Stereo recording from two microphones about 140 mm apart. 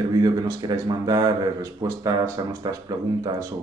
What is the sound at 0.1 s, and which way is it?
Speech, 25° right (ahead or behind).